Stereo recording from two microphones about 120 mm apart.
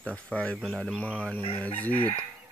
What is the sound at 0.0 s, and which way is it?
Speech, 10° left (ahead or behind).